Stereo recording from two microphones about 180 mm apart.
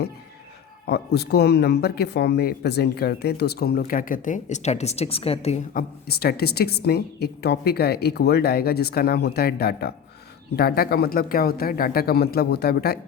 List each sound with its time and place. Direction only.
0.9 s speech: 65° left (ahead or behind); by 5.5 s 35° left (ahead or behind)
5.7 s speech: 60° left (ahead or behind)